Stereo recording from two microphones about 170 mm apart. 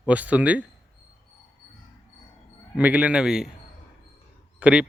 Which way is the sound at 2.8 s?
10° right (ahead or behind).